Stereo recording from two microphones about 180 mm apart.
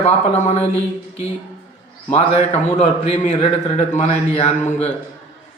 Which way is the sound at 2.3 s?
35° left (ahead or behind).